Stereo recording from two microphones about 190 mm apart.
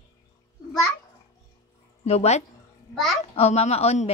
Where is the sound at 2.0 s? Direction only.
35° left (ahead or behind).